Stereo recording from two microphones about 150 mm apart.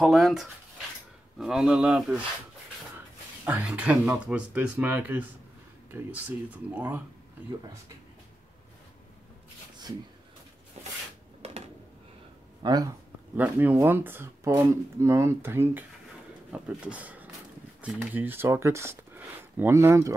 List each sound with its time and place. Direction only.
0.0 s speech: centre (ahead or behind)
3.4 s speech: 10° right (ahead or behind)
10.8 s a sound: 45° right (ahead or behind)
12.6 s speech: 25° right (ahead or behind)
13.4 s speech: 10° right (ahead or behind)